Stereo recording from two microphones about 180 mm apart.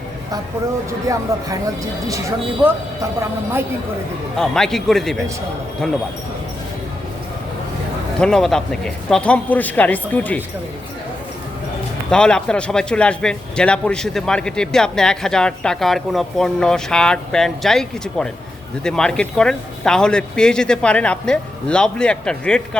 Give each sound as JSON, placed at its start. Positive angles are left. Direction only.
{"t": 0.9, "sound": "speech", "side_deg": -20}
{"t": 4.4, "sound": "a man's voice", "side_deg": 5}
{"t": 8.2, "sound": "speech", "side_deg": 5}
{"t": 12.1, "sound": "a man's voice", "side_deg": 5}